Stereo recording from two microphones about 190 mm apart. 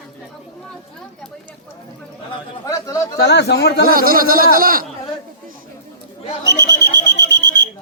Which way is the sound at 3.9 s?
50° right (ahead or behind).